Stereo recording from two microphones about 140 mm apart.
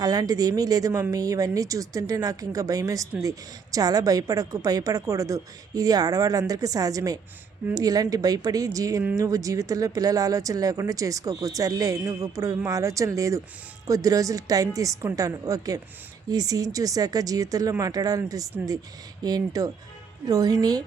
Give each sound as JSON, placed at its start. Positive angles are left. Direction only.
{"t": 0.0, "sound": "speech", "side_deg": -25}